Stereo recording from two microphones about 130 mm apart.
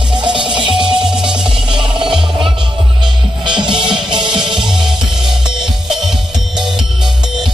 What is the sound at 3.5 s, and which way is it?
Music, 35° right (ahead or behind).